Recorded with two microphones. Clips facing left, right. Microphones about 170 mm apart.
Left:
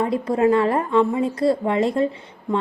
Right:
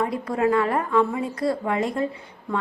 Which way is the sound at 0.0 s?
25° left (ahead or behind).